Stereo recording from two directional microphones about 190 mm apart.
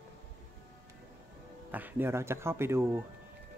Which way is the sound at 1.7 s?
10° right (ahead or behind).